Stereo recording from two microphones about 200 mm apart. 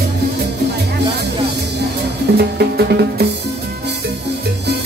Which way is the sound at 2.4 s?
55° right (ahead or behind).